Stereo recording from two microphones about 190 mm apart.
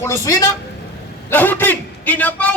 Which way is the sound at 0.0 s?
15° left (ahead or behind).